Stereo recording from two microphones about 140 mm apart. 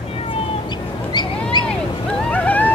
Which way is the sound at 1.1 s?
30° left (ahead or behind).